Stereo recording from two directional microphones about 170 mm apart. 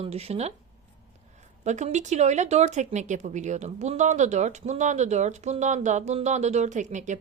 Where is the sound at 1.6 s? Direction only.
45° right (ahead or behind).